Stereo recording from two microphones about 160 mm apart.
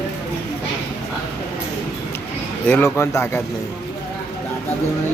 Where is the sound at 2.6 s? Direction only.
15° left (ahead or behind).